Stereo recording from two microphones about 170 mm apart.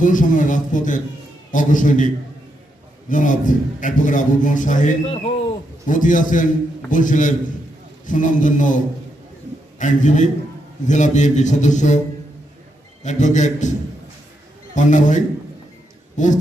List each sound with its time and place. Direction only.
0.0 s a man's voice: 50° left (ahead or behind)
3.1 s a man's voice: 50° left (ahead or behind)
5.0 s a man's voice: 35° left (ahead or behind)
5.9 s a man's voice: 50° left (ahead or behind)
13.0 s a man's voice: 45° left (ahead or behind)
14.8 s a man's voice: 45° left (ahead or behind)